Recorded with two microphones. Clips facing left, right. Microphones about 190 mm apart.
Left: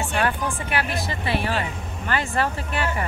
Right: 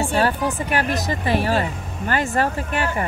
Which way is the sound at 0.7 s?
40° right (ahead or behind).